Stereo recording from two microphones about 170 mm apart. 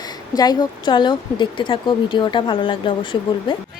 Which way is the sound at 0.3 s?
25° left (ahead or behind).